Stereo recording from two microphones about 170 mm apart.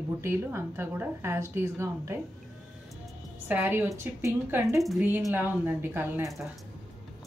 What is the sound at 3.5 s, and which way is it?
A woman's voice, 10° right (ahead or behind).